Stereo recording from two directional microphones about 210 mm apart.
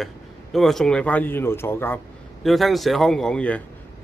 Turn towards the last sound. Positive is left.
turn(degrees=5)  # may be behind; listen again after turning